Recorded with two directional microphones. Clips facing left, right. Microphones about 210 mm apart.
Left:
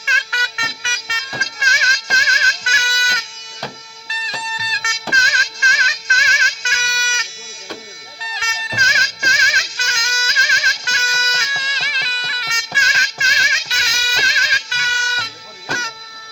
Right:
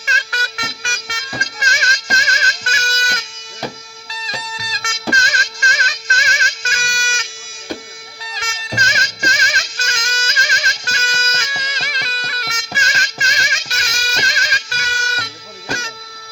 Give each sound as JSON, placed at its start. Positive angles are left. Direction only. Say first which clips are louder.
{"t": 0.0, "sound": "music", "louder": "right 2 dB", "side_deg": -40}
{"t": 4.5, "sound": "music", "louder": "even", "side_deg": -45}
{"t": 8.3, "sound": "music", "louder": "right 3 dB", "side_deg": -45}